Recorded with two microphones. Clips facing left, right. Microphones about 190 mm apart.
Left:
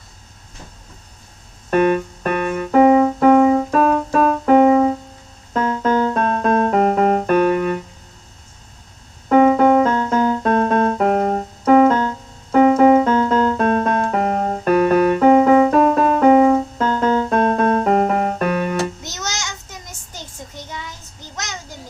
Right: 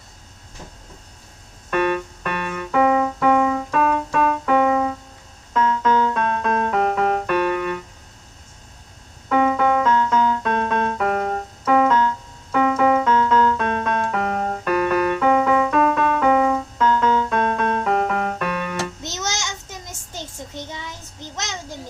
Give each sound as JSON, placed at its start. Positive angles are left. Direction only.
{"t": 1.7, "sound": "keyboard", "side_deg": 40}
{"t": 5.5, "sound": "music", "side_deg": 35}
{"t": 9.3, "sound": "music", "side_deg": 40}
{"t": 19.0, "sound": "child singing", "side_deg": -25}
{"t": 21.3, "sound": "a sound", "side_deg": -25}